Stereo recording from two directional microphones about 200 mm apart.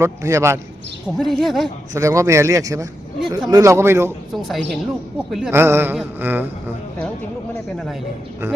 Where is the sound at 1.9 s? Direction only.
15° right (ahead or behind).